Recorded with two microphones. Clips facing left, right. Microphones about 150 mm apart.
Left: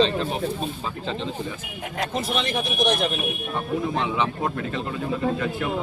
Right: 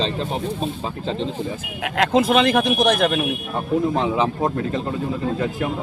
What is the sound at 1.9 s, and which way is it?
Speech, 90° right.